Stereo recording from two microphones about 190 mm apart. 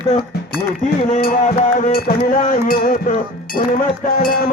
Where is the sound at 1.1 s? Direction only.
50° left (ahead or behind).